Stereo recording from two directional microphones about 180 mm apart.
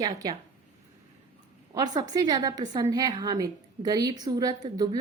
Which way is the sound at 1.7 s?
20° right (ahead or behind).